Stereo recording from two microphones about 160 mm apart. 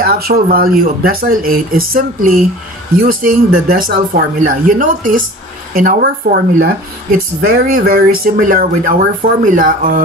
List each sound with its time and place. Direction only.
0.0 s speech: 70° right (ahead or behind)
5.8 s speech: 70° right (ahead or behind)